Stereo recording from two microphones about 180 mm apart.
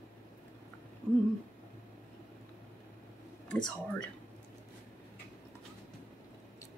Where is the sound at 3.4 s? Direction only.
5° left (ahead or behind).